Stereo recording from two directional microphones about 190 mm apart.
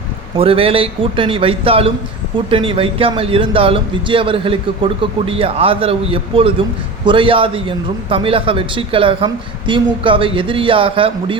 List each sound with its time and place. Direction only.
0.3 s a man's voice: 30° right (ahead or behind)